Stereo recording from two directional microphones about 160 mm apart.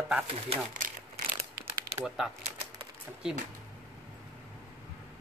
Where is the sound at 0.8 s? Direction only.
65° right (ahead or behind).